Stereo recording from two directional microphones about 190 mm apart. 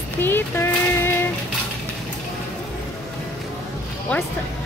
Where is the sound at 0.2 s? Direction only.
10° left (ahead or behind).